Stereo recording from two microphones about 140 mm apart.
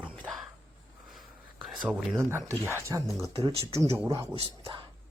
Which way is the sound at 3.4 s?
40° right (ahead or behind).